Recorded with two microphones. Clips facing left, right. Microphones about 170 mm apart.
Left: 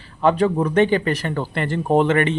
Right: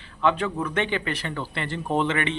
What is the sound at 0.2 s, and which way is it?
Speech, 40° left (ahead or behind).